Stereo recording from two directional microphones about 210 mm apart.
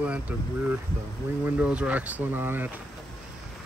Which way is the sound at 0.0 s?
5° right (ahead or behind).